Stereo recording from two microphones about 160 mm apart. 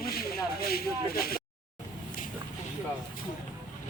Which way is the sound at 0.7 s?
70° left (ahead or behind).